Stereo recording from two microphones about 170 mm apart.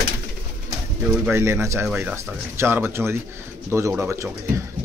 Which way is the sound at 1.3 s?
15° right (ahead or behind).